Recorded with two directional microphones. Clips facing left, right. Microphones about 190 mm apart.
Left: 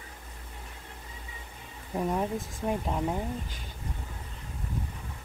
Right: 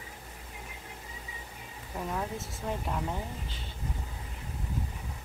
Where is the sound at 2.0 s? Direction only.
20° left (ahead or behind).